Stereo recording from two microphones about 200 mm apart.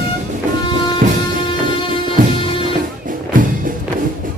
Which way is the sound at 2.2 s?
40° right (ahead or behind).